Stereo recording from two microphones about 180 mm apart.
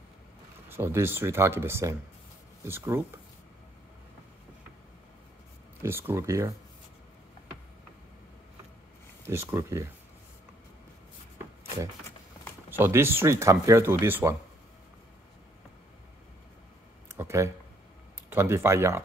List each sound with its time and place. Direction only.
0.7 s speech: 15° right (ahead or behind)
5.8 s speech: 15° right (ahead or behind)
9.2 s speech: 15° right (ahead or behind)
12.6 s speech: 10° right (ahead or behind)
17.1 s speech: 15° right (ahead or behind)